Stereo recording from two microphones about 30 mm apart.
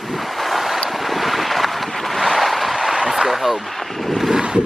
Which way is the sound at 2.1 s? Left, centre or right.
Centre.